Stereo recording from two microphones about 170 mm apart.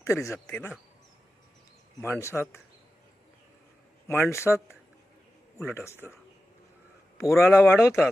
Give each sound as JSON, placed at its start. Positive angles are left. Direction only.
{"t": 0.0, "sound": "speech", "side_deg": 15}
{"t": 2.2, "sound": "speech", "side_deg": 15}
{"t": 4.1, "sound": "speech", "side_deg": 15}
{"t": 7.2, "sound": "speech", "side_deg": 15}